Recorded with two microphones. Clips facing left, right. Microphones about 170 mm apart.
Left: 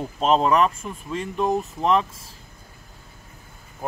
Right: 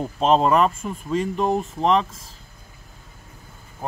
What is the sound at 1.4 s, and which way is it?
Speech, 30° right (ahead or behind).